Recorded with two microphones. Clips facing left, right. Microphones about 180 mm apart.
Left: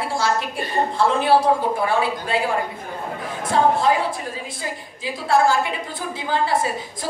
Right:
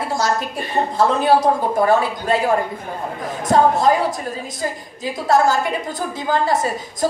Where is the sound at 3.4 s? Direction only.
40° right (ahead or behind).